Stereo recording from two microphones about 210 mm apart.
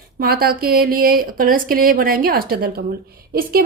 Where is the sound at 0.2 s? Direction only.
45° right (ahead or behind).